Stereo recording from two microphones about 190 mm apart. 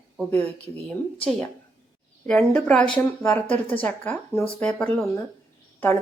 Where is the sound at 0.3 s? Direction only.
10° left (ahead or behind).